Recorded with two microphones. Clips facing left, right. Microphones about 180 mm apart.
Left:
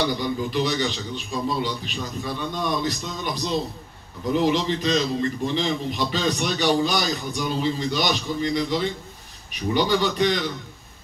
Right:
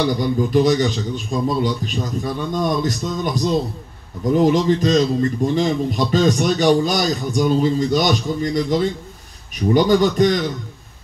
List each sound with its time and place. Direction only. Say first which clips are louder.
0.2 s a man's voice: right 8 dB; 45° right (ahead or behind)